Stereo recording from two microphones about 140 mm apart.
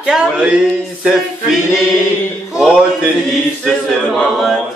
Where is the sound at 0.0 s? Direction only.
5° right (ahead or behind).